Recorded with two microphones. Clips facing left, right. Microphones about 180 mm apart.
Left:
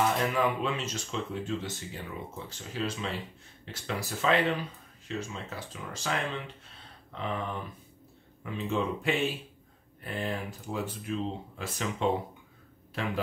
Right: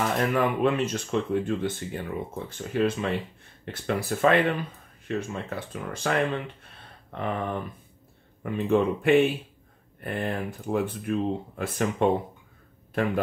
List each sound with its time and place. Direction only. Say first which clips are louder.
0.0 s speech: right 3 dB; 55° right (ahead or behind)